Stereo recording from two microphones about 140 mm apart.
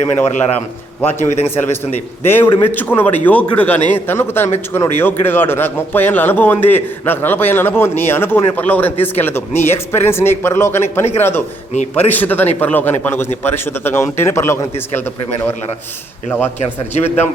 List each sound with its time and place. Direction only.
1.0 s a man's voice: 15° left (ahead or behind)